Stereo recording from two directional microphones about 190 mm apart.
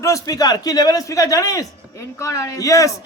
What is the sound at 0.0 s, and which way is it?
A man's voice, 20° left (ahead or behind).